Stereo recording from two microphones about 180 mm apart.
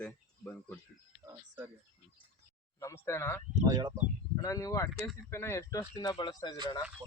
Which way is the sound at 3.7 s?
25° right (ahead or behind).